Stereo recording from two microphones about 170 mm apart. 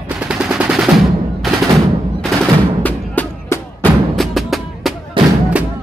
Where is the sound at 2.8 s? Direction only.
10° left (ahead or behind).